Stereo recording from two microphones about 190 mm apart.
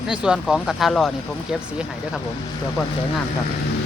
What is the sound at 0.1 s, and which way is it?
Speech, 5° right (ahead or behind).